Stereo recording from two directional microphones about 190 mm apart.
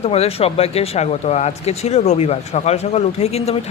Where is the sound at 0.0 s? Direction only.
30° left (ahead or behind).